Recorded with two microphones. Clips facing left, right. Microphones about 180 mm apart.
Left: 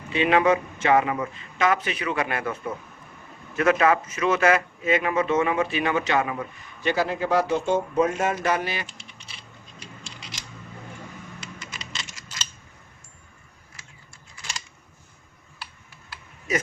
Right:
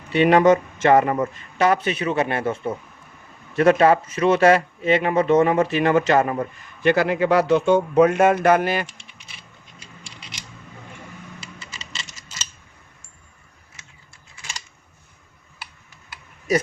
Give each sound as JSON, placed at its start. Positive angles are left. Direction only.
{"t": 0.2, "sound": "a man's voice", "side_deg": -40}